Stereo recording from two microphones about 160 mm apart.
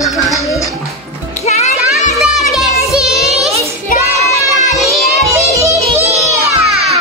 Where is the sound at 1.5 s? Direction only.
45° left (ahead or behind).